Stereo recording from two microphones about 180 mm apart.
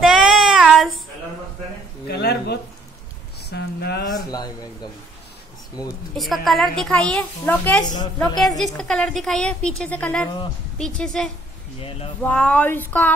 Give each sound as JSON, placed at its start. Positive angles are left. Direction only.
{"t": 0.0, "sound": "child singing", "side_deg": -5}
{"t": 2.0, "sound": "a sound", "side_deg": 65}
{"t": 3.4, "sound": "speech", "side_deg": 65}
{"t": 6.1, "sound": "a woman's voice", "side_deg": 0}
{"t": 7.8, "sound": "a woman's voice", "side_deg": 25}
{"t": 8.4, "sound": "a woman's voice", "side_deg": 0}